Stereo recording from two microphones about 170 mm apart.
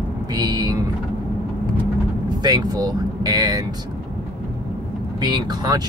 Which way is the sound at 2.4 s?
25° right (ahead or behind).